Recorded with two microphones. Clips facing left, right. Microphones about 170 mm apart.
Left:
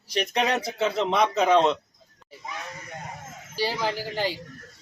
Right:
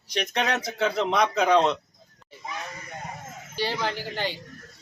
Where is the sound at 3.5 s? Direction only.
5° left (ahead or behind).